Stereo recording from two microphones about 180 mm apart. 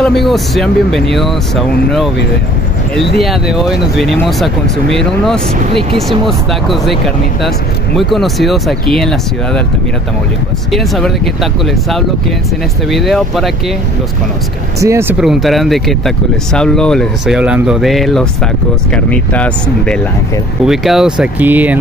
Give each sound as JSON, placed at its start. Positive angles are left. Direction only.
{"t": 0.0, "sound": "speech", "side_deg": 0}
{"t": 3.2, "sound": "speech", "side_deg": 0}
{"t": 10.7, "sound": "speech", "side_deg": 0}
{"t": 12.9, "sound": "speech", "side_deg": 0}
{"t": 14.8, "sound": "speech", "side_deg": -15}